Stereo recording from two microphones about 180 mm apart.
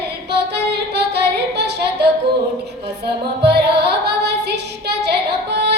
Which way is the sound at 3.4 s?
65° right (ahead or behind).